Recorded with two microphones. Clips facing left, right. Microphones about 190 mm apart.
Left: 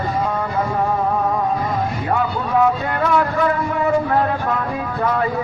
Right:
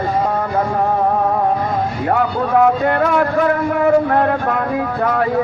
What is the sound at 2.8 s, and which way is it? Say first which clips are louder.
A man's voice: right 3 dB; 55° right (ahead or behind).